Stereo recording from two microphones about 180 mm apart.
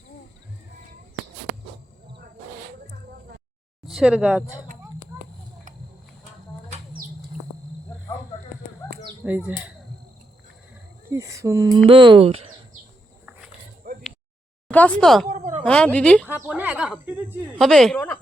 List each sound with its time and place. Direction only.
3.8 s speech: centre (ahead or behind)
5.1 s a sound: 15° right (ahead or behind)
9.2 s speech: 10° right (ahead or behind)
11.1 s speech: 15° right (ahead or behind)
11.9 s speech: 30° right (ahead or behind)
13.8 s a sound: 50° right (ahead or behind)
14.7 s speech: 5° left (ahead or behind)
16.3 s a woman's voice: 10° right (ahead or behind); by 18.2 s 5° left (ahead or behind)